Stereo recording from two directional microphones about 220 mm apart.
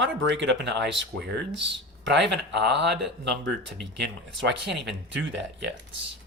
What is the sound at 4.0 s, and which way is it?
Speech, 55° right (ahead or behind).